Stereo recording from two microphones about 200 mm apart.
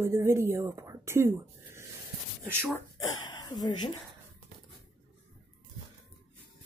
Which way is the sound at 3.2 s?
20° left (ahead or behind).